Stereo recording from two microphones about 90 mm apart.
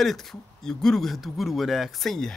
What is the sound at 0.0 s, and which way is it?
Speech, centre (ahead or behind).